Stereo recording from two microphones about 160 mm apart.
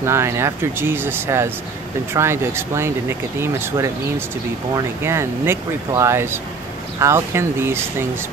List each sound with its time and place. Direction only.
0.0 s speech: 15° right (ahead or behind)